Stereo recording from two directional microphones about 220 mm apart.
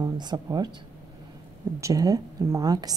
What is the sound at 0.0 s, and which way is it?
Speech, 20° right (ahead or behind).